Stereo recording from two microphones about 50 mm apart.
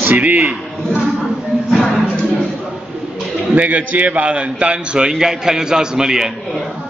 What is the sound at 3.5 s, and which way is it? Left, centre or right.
A man's voice, right.